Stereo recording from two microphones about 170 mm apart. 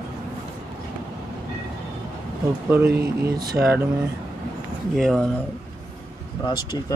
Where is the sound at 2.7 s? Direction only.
10° right (ahead or behind).